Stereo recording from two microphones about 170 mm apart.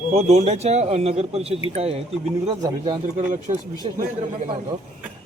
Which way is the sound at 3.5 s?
40° right (ahead or behind).